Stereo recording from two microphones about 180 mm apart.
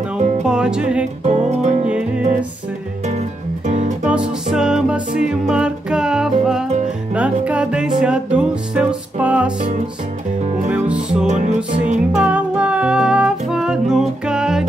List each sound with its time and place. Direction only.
0.4 s music: 5° right (ahead or behind)
1.2 s speech: 40° right (ahead or behind)
1.9 s music: 5° right (ahead or behind)
3.1 s music: 40° right (ahead or behind)
4.5 s music: 5° right (ahead or behind)
10.9 s music: 5° right (ahead or behind)
11.2 s music: 40° right (ahead or behind)
12.2 s music: 5° right (ahead or behind)